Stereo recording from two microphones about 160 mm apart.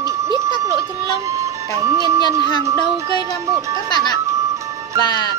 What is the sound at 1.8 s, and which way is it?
Speech, 20° right (ahead or behind).